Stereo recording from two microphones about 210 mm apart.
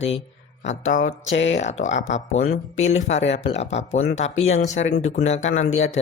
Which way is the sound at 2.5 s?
70° left (ahead or behind).